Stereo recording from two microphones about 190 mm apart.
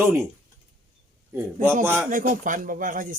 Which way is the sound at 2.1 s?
45° right (ahead or behind).